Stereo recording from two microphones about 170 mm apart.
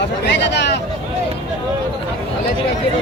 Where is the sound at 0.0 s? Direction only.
90° left.